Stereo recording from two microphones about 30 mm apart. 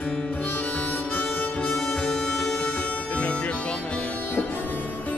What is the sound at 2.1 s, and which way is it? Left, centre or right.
Music, left.